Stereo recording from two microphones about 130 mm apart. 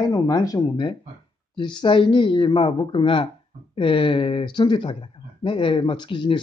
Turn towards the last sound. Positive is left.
turn(degrees=40)  # may be behind; listen again after turning